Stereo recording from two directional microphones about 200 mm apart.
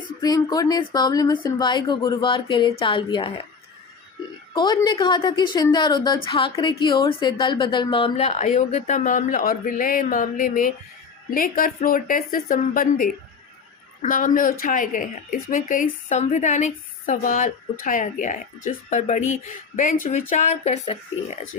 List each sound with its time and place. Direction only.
0.2 s speech: 20° left (ahead or behind)
4.5 s a woman's voice: 20° left (ahead or behind)